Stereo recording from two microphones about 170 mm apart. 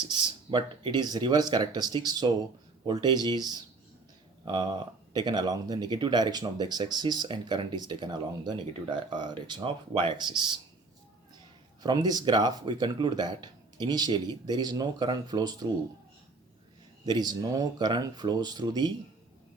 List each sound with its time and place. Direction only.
0.0 s speech: 25° right (ahead or behind)
5.1 s speech: 25° right (ahead or behind)
11.8 s speech: 25° right (ahead or behind)
17.1 s speech: 25° right (ahead or behind)